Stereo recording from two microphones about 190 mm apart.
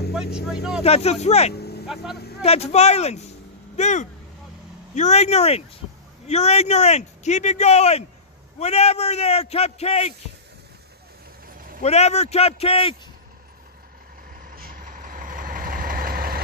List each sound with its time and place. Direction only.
0.1 s vehicle: 5° right (ahead or behind)
0.5 s speech: centre (ahead or behind)
0.8 s speech: 30° left (ahead or behind)
1.5 s vehicle: 55° left (ahead or behind)
2.4 s speech: 35° left (ahead or behind)
11.4 s vehicle: 50° right (ahead or behind)
11.8 s speech: 35° left (ahead or behind)
14.5 s vehicle: 50° right (ahead or behind)